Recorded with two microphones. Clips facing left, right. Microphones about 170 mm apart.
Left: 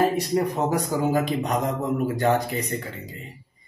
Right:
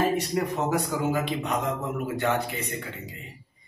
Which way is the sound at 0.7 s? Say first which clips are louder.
Left 3 dB; 40° left (ahead or behind).